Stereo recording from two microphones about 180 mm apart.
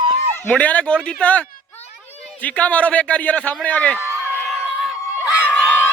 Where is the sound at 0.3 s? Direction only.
10° left (ahead or behind).